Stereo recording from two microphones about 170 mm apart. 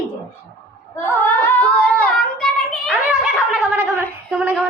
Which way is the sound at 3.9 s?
10° left (ahead or behind).